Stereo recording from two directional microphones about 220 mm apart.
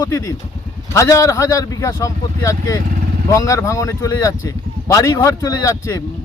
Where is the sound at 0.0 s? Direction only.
15° left (ahead or behind).